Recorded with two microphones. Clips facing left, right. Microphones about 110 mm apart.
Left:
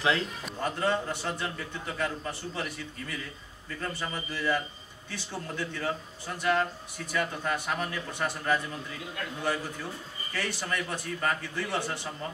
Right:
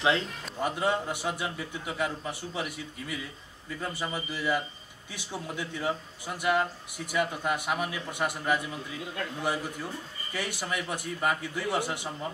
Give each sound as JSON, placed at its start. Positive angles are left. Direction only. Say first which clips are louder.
{"t": 0.0, "sound": "speech", "louder": "right 1 dB", "side_deg": -25}
{"t": 0.7, "sound": "a man's voice", "louder": "even", "side_deg": -10}